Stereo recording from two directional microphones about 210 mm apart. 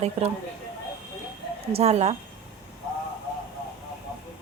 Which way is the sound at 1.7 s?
30° right (ahead or behind).